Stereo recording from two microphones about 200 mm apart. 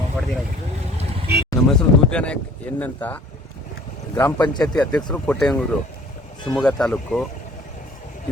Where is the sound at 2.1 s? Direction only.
5° left (ahead or behind).